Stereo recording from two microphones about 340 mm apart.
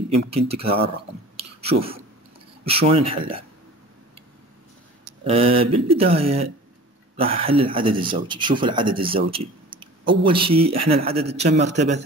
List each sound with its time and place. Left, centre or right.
0.3 s speech: centre
1.3 s a sound: centre
2.6 s speech: centre
5.2 s a man's voice: centre